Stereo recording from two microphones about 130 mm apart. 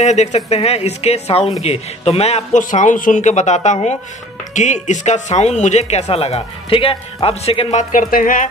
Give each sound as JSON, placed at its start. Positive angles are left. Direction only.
{"t": 0.0, "sound": "speech", "side_deg": 60}
{"t": 7.9, "sound": "speech", "side_deg": 90}